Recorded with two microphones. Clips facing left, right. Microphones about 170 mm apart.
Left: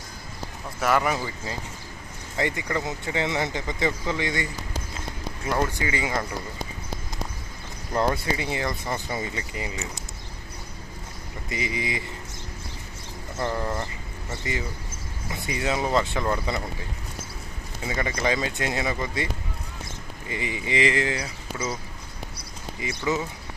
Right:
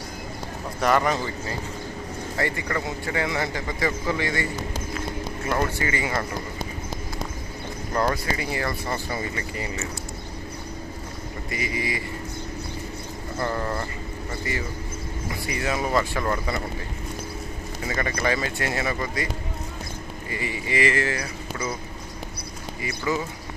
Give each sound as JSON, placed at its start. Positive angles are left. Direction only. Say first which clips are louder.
{"t": 0.8, "sound": "speech", "louder": "right 2 dB", "side_deg": 5}
{"t": 5.5, "sound": "speech", "louder": "even", "side_deg": 15}
{"t": 7.9, "sound": "speech", "louder": "left 1 dB", "side_deg": 20}
{"t": 11.4, "sound": "speech", "louder": "even", "side_deg": 20}
{"t": 13.4, "sound": "speech", "louder": "even", "side_deg": 5}
{"t": 14.5, "sound": "speech", "louder": "even", "side_deg": 20}
{"t": 17.8, "sound": "speech", "louder": "even", "side_deg": 15}
{"t": 20.3, "sound": "speech", "louder": "even", "side_deg": 20}
{"t": 22.8, "sound": "speech", "louder": "even", "side_deg": 20}